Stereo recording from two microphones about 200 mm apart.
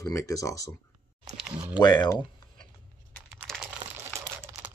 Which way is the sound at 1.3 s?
Centre (ahead or behind).